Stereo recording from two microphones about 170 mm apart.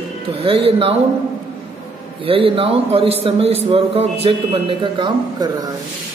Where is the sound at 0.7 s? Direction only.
35° right (ahead or behind).